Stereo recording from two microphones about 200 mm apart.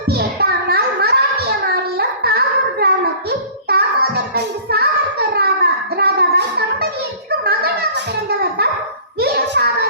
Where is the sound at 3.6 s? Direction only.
50° right (ahead or behind).